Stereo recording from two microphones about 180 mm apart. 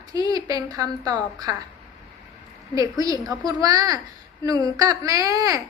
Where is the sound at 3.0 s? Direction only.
20° right (ahead or behind).